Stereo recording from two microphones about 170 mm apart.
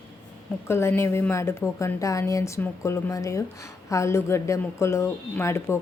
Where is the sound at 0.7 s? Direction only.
15° left (ahead or behind).